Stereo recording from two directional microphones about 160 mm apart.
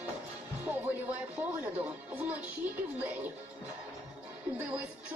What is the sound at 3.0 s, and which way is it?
Speech, 10° right (ahead or behind).